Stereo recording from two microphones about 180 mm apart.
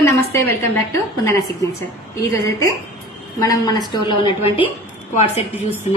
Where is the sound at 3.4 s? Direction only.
20° left (ahead or behind).